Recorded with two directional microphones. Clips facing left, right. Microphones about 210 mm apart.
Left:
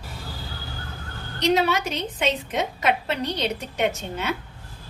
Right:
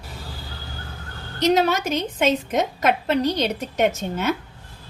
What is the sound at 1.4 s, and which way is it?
A woman's voice, 45° right (ahead or behind).